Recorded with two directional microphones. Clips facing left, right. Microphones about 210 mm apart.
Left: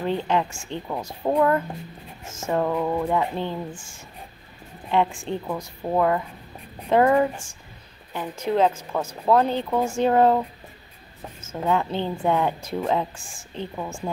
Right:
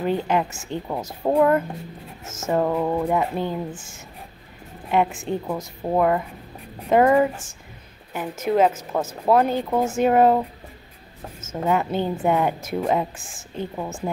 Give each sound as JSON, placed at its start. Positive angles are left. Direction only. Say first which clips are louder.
{"t": 0.0, "sound": "speech", "louder": "right 2 dB", "side_deg": -10}
{"t": 2.3, "sound": "a sound", "louder": "right 2 dB", "side_deg": -20}
{"t": 2.7, "sound": "speech", "louder": "right 2 dB", "side_deg": -15}
{"t": 4.9, "sound": "speech", "louder": "right 1 dB", "side_deg": -5}
{"t": 11.6, "sound": "speech", "louder": "right 2 dB", "side_deg": -10}